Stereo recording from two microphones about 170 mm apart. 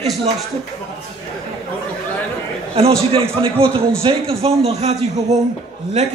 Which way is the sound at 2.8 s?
35° right (ahead or behind).